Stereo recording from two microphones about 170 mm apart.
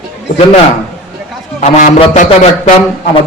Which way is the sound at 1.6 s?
40° left (ahead or behind).